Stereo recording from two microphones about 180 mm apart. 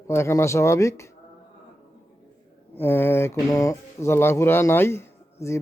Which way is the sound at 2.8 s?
10° left (ahead or behind).